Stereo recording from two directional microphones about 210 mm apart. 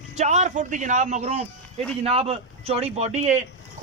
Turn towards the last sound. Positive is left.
turn(degrees=-30)  # may be behind; listen again after turning